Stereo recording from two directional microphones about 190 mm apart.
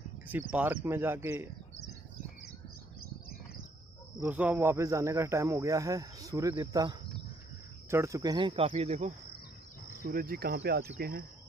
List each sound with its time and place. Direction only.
0.3 s speech: 10° right (ahead or behind)
4.2 s speech: 10° right (ahead or behind); by 9.1 s 35° right (ahead or behind)
10.0 s speech: 50° right (ahead or behind)